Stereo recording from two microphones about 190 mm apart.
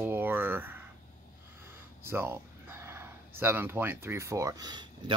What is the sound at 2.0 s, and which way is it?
Speech, 15° right (ahead or behind).